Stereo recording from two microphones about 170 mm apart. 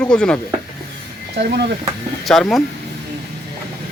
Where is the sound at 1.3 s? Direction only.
75° right (ahead or behind).